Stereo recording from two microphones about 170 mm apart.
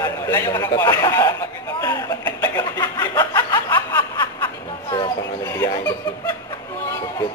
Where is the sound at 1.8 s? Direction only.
20° left (ahead or behind).